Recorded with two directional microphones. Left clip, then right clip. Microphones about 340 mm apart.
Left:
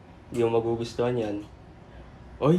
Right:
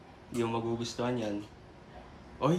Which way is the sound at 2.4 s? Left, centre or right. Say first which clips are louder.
Left 6 dB; centre.